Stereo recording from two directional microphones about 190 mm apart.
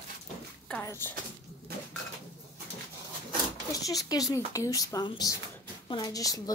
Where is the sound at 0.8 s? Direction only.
15° left (ahead or behind).